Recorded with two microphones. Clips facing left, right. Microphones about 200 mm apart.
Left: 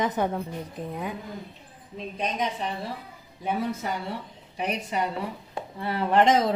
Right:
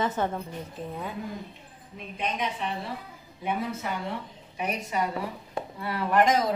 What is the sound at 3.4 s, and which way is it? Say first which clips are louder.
Speech: left 2 dB; 40° left (ahead or behind).